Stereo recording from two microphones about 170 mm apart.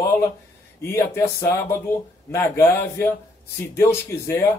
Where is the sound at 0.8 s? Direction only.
15° left (ahead or behind).